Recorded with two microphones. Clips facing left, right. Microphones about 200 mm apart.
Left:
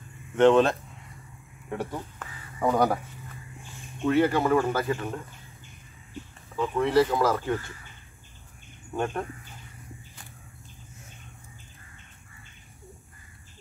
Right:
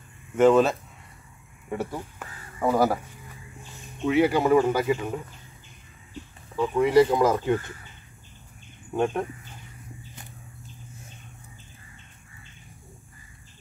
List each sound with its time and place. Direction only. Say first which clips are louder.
0.4 s speech: right 1 dB; 5° right (ahead or behind)
4.0 s speech: right 1 dB; 10° right (ahead or behind)
6.6 s speech: right 3 dB; 10° right (ahead or behind)
8.9 s speech: right 4 dB; 10° right (ahead or behind)